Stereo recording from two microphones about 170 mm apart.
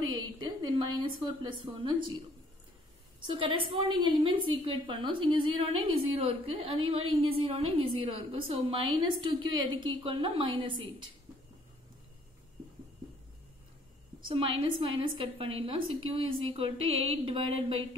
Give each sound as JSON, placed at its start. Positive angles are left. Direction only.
{"t": 0.1, "sound": "a woman's voice", "side_deg": -25}
{"t": 14.2, "sound": "a woman's voice", "side_deg": -30}